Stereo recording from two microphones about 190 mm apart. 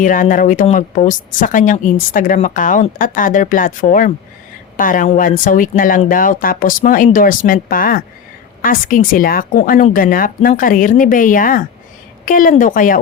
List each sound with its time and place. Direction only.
0.0 s a woman's voice: 45° left (ahead or behind)